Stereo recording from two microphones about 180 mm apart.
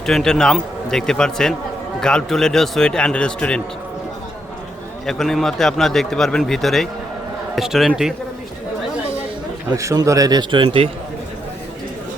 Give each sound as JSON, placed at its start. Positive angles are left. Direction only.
{"t": 0.0, "sound": "a man's voice", "side_deg": 0}
{"t": 5.0, "sound": "a man's voice", "side_deg": 0}
{"t": 9.6, "sound": "a man's voice", "side_deg": -15}